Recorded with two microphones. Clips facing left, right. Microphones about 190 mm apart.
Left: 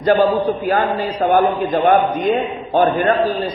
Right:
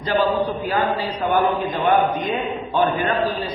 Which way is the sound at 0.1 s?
50° left (ahead or behind).